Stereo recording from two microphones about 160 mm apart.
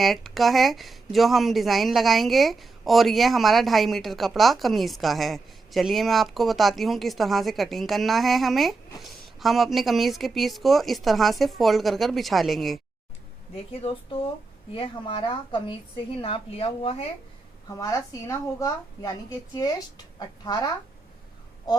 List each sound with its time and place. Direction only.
0.0 s speech: centre (ahead or behind)
13.7 s a woman's voice: 35° left (ahead or behind)
17.7 s a woman's voice: 20° left (ahead or behind)
20.1 s a woman's voice: 25° left (ahead or behind)